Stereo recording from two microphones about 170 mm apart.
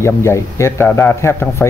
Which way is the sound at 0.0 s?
15° left (ahead or behind).